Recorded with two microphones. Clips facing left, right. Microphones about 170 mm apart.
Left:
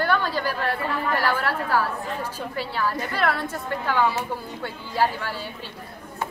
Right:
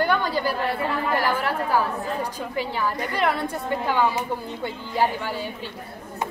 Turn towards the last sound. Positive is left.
turn(degrees=-15)  # may be behind; listen again after turning